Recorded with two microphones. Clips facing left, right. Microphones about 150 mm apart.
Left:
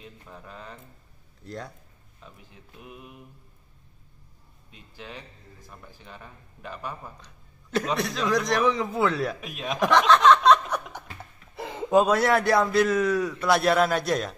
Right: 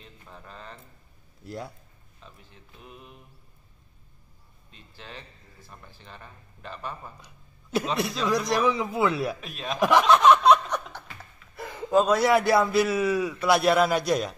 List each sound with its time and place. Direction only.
0.0 s a man's voice: 10° left (ahead or behind)
1.4 s a man's voice: 5° right (ahead or behind)
2.2 s a man's voice: 10° left (ahead or behind)
4.6 s a man's voice: 10° left (ahead or behind)
7.9 s a man's voice: 5° right (ahead or behind)
9.4 s a man's voice: 10° left (ahead or behind)
9.8 s speech: 10° right (ahead or behind)
10.7 s laughter: 15° left (ahead or behind)
11.5 s a sound: 25° left (ahead or behind)
12.1 s a man's voice: centre (ahead or behind)